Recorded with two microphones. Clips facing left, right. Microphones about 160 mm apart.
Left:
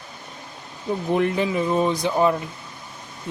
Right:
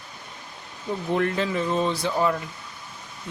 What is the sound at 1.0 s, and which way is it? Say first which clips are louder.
Speech: left 3 dB; 15° left (ahead or behind).